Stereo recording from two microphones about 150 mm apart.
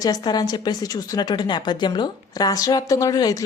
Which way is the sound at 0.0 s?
25° left (ahead or behind).